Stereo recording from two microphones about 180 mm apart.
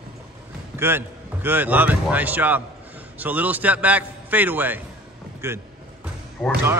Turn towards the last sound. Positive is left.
turn(degrees=0)  # may be behind; listen again after turning